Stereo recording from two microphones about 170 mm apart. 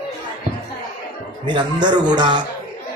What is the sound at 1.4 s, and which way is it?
A man's voice, 25° right (ahead or behind).